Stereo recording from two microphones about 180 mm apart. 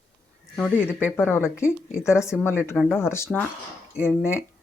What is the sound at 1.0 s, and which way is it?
Speech, 10° left (ahead or behind).